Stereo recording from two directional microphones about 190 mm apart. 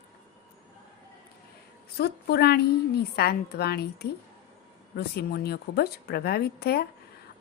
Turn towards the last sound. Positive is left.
turn(degrees=55)  # may be behind; listen again after turning